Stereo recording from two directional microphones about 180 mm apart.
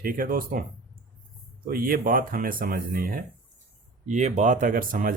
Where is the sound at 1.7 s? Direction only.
50° right (ahead or behind).